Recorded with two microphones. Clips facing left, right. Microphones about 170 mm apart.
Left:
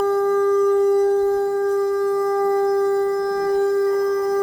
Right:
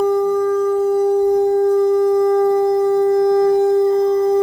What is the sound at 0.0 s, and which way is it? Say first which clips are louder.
Shofar: right 2 dB; 15° right (ahead or behind).